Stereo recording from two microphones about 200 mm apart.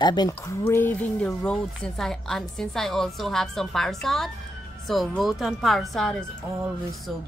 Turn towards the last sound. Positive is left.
turn(degrees=0)  # may be behind; listen again after turning